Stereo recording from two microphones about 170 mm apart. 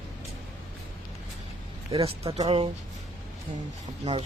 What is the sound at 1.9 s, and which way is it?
Speech, 35° right (ahead or behind).